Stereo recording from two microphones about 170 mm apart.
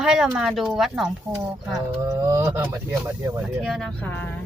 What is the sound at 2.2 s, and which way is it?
Speech, 15° right (ahead or behind).